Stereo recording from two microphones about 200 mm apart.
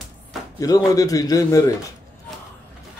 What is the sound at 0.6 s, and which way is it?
Speech, 15° left (ahead or behind).